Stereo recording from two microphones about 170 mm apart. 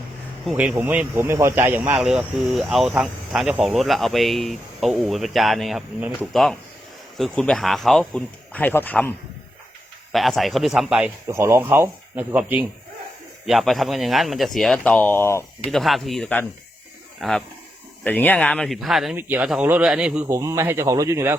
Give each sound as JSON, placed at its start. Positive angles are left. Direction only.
{"t": 0.4, "sound": "speech", "side_deg": -10}
{"t": 15.7, "sound": "speech", "side_deg": 0}
{"t": 19.1, "sound": "speech", "side_deg": -10}
{"t": 20.2, "sound": "speech", "side_deg": -20}